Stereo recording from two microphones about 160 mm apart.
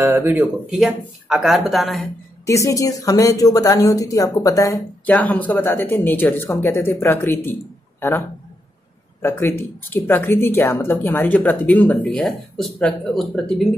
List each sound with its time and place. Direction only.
0.0 s speech: 15° right (ahead or behind)
2.4 s speech: 20° left (ahead or behind)
9.2 s speech: 15° left (ahead or behind)